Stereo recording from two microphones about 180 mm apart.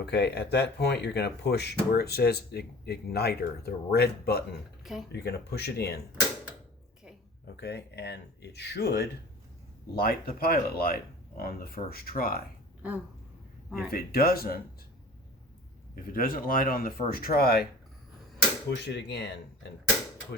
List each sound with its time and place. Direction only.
0.0 s speech: 70° left (ahead or behind)
4.8 s a sound: centre (ahead or behind)
5.1 s speech: 65° left (ahead or behind)
7.4 s speech: 65° left (ahead or behind)
13.7 s speech: 5° right (ahead or behind)
13.9 s speech: 55° left (ahead or behind)
16.0 s speech: 50° left (ahead or behind)
18.7 s speech: 70° left (ahead or behind)